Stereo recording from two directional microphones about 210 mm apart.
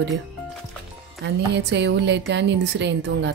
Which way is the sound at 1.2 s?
55° right (ahead or behind).